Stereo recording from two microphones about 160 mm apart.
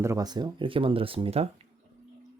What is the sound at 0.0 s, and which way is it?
Speech, 20° right (ahead or behind).